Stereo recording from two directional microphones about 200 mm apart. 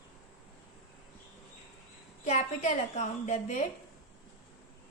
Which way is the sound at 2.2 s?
35° left (ahead or behind).